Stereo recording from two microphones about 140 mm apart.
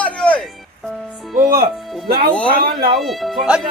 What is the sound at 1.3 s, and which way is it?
Music, 90° right.